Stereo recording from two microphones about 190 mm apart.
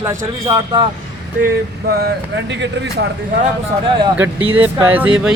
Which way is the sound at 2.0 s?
65° right (ahead or behind).